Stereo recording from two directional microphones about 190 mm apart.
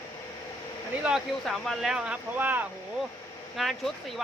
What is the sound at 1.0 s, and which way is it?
Speech, centre (ahead or behind).